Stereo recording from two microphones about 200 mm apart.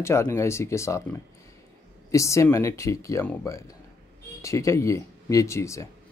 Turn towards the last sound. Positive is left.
turn(degrees=15)  # may be behind; listen again after turning